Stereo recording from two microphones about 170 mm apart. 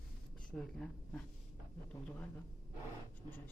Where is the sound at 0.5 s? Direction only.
5° left (ahead or behind).